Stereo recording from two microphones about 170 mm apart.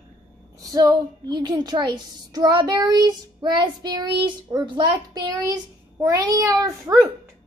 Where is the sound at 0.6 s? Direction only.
20° right (ahead or behind).